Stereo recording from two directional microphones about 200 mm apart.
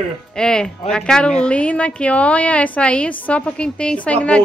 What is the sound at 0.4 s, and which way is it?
A woman's voice, 5° left (ahead or behind).